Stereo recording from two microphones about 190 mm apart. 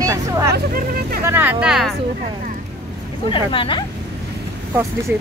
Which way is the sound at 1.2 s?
10° right (ahead or behind).